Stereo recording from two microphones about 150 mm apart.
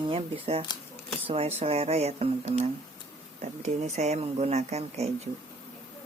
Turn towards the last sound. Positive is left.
turn(degrees=-45)  # may be behind; listen again after turning